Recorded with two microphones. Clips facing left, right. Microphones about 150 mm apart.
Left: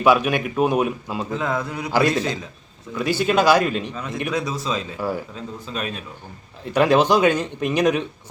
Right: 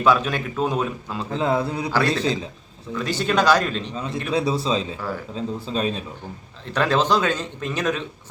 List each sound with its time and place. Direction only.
0.0 s speech: 15° left (ahead or behind)
1.3 s speech: 30° right (ahead or behind)
2.9 s speech: 10° left (ahead or behind)
3.9 s speech: 30° right (ahead or behind)
4.9 s speech: 15° left (ahead or behind)
5.3 s speech: 30° right (ahead or behind)
6.7 s speech: 15° left (ahead or behind)